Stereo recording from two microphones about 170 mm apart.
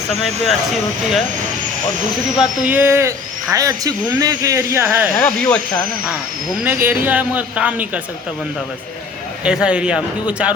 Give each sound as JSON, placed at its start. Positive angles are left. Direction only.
{"t": 2.4, "sound": "speech", "side_deg": -10}
{"t": 5.1, "sound": "speech", "side_deg": 15}
{"t": 6.7, "sound": "speech", "side_deg": -10}
{"t": 9.4, "sound": "speech", "side_deg": -5}